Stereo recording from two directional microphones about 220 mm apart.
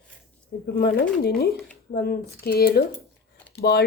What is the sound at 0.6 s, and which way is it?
A woman's voice, 45° left (ahead or behind).